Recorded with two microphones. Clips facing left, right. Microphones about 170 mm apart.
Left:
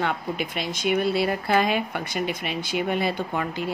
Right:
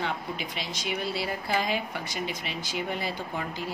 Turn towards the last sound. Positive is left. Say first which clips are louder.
# left 6 dB
turn(degrees=65)  # may be behind; listen again after turning